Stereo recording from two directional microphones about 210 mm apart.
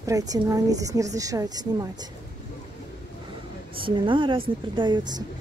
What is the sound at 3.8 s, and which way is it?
A woman's voice, 25° right (ahead or behind).